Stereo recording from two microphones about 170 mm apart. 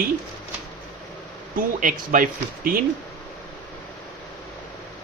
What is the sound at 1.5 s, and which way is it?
Speech, 50° right (ahead or behind).